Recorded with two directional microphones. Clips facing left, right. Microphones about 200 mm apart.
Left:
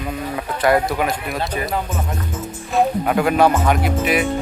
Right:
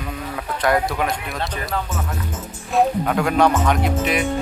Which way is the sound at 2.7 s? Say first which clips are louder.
Left 1 dB; 5° left (ahead or behind).